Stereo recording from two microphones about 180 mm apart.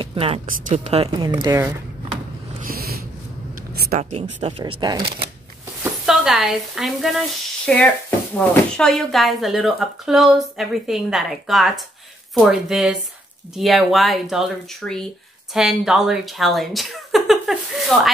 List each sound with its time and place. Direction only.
0.0 s speech: 30° right (ahead or behind)
2.6 s a sound: 55° right (ahead or behind)
3.9 s speech: 40° right (ahead or behind)
6.0 s speech: centre (ahead or behind)